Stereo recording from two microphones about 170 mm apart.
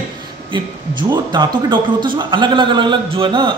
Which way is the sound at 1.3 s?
25° right (ahead or behind).